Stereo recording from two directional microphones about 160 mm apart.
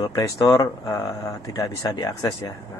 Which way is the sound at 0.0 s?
20° left (ahead or behind).